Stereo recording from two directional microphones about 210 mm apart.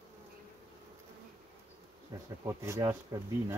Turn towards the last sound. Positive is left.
turn(degrees=-15)  # may be behind; listen again after turning